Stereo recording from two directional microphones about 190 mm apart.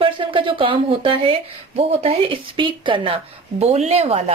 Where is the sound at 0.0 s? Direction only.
25° right (ahead or behind).